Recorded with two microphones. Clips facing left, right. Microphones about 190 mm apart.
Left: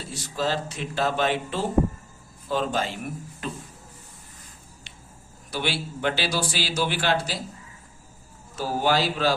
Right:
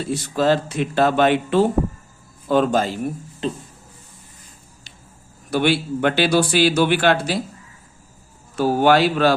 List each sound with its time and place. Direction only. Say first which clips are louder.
0.1 s a man's voice: right 9 dB; 60° right (ahead or behind)
2.8 s speech: right 7 dB; 35° right (ahead or behind)
5.5 s a man's voice: right 10 dB; 55° right (ahead or behind)
8.5 s a man's voice: right 8 dB; 65° right (ahead or behind)